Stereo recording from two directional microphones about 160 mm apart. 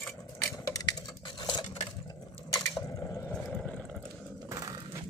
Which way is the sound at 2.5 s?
20° left (ahead or behind).